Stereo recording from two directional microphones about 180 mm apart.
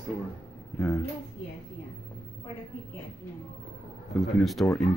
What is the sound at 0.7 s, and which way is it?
Speech, 15° left (ahead or behind).